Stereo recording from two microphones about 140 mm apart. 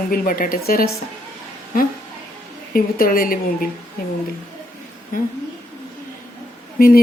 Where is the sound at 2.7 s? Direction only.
90° left.